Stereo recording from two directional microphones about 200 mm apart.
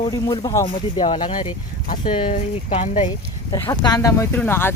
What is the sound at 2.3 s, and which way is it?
Speech, 40° left (ahead or behind).